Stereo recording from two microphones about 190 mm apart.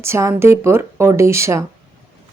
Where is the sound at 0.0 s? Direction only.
15° right (ahead or behind).